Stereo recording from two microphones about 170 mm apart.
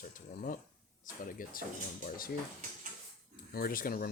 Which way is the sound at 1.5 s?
55° left (ahead or behind).